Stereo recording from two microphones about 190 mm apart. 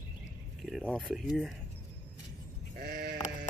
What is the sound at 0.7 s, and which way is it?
Speech, 5° right (ahead or behind).